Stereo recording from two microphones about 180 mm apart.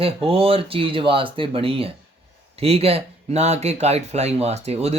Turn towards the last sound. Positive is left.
turn(degrees=-35)  # may be behind; listen again after turning